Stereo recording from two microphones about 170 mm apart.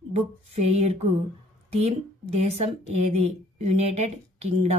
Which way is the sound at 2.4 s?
40° right (ahead or behind).